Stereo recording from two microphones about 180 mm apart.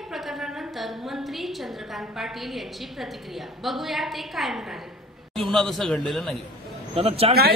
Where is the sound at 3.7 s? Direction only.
Centre (ahead or behind).